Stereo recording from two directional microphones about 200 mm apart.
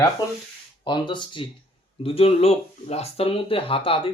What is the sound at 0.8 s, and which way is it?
Speech, 25° left (ahead or behind).